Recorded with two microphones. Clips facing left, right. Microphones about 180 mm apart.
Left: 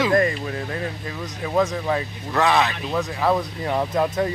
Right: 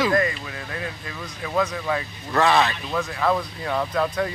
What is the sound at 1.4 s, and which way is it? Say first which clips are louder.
Speech: left 3 dB; 25° left (ahead or behind).